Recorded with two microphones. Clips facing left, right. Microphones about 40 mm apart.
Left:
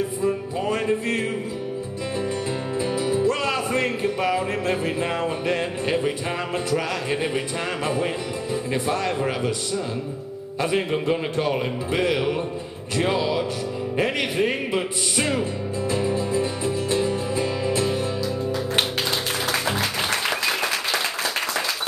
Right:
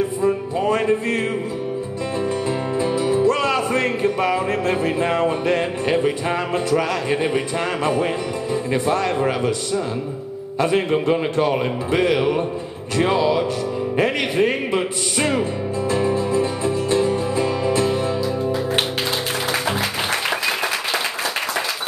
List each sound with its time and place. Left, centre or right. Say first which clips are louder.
0.2 s music: right 5 dB; centre
2.8 s music: right 4 dB; centre
10.6 s music: right 4 dB; centre